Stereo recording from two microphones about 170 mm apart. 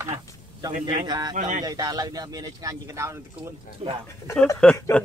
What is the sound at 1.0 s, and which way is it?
Speech, 25° right (ahead or behind).